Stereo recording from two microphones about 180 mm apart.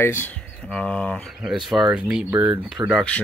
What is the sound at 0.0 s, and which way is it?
Speech, 15° left (ahead or behind).